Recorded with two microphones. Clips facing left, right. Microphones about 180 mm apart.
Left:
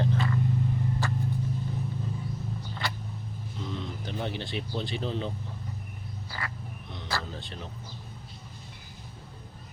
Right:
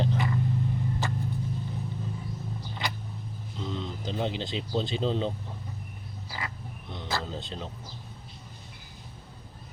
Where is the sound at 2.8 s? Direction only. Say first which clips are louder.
Right 1 dB; 15° right (ahead or behind).